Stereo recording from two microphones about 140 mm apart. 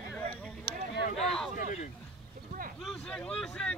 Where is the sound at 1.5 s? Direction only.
60° left (ahead or behind).